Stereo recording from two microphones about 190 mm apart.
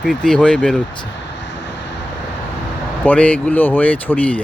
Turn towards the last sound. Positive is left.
turn(degrees=10)  # may be behind; listen again after turning